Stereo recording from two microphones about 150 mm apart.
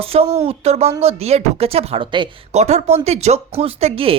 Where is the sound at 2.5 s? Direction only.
45° right (ahead or behind).